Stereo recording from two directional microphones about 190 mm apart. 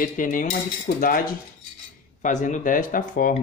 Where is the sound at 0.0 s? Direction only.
45° left (ahead or behind).